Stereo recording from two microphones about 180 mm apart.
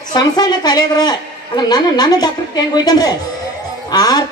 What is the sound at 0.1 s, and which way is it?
A woman's voice, 25° left (ahead or behind).